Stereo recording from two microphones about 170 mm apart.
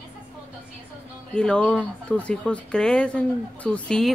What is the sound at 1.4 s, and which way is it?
Speech, 5° left (ahead or behind).